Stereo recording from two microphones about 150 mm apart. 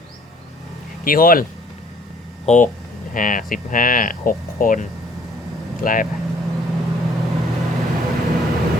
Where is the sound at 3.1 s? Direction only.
65° left (ahead or behind).